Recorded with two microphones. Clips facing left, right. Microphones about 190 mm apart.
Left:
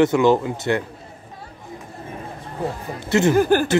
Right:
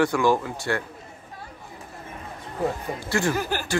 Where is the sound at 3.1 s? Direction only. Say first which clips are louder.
Left 7 dB; 20° left (ahead or behind).